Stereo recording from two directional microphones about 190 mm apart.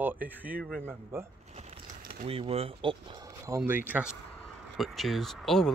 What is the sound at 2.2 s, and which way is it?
Speech, 30° right (ahead or behind).